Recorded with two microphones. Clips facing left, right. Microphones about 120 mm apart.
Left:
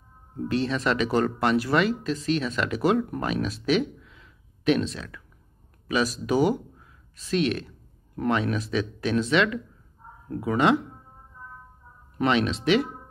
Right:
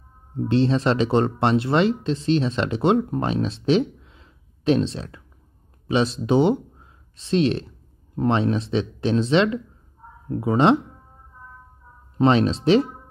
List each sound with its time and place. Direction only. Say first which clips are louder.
0.4 s speech: right 6 dB; 30° right (ahead or behind)
12.2 s speech: right 5 dB; 30° right (ahead or behind)